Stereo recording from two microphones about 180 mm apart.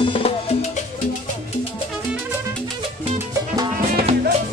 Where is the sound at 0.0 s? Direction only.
30° left (ahead or behind).